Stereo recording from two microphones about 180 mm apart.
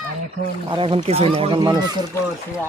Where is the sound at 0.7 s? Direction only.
30° right (ahead or behind).